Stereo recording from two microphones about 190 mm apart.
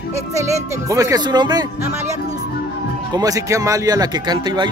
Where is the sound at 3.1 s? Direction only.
20° right (ahead or behind).